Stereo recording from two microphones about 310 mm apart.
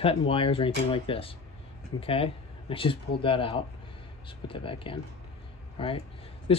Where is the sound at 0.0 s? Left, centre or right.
Centre.